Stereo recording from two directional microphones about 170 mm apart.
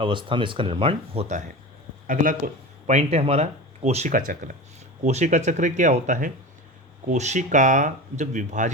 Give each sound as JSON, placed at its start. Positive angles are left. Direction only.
{"t": 0.0, "sound": "speech", "side_deg": -30}
{"t": 2.8, "sound": "speech", "side_deg": -40}
{"t": 5.0, "sound": "speech", "side_deg": -45}